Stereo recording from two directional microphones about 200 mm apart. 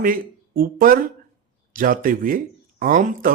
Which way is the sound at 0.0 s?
45° right (ahead or behind).